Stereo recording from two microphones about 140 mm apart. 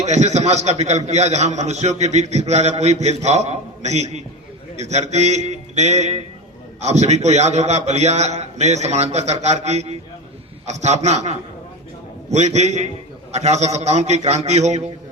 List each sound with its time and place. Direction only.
0.0 s a man's voice: 55° right (ahead or behind)